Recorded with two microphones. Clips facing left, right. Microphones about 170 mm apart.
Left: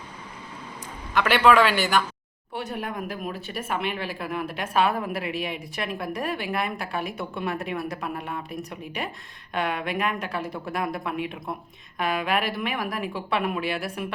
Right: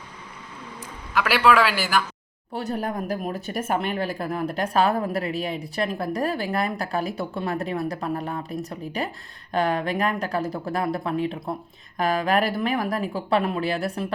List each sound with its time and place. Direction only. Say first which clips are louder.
1.1 s speech: left 1 dB; centre (ahead or behind)
2.5 s speech: right 4 dB; 35° right (ahead or behind)